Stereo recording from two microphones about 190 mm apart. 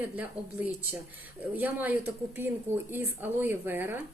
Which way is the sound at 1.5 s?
10° right (ahead or behind).